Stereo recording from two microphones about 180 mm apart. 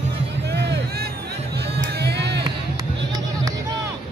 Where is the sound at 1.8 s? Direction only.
65° right (ahead or behind).